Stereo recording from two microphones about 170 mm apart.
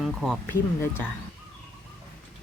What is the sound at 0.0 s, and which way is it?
Speech, centre (ahead or behind).